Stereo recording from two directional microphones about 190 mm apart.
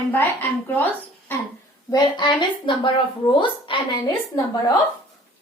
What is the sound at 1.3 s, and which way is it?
Speech, 10° left (ahead or behind).